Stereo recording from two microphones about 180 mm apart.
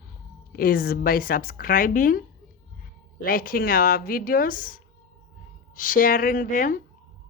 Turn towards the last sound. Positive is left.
turn(degrees=45)  # may be behind; listen again after turning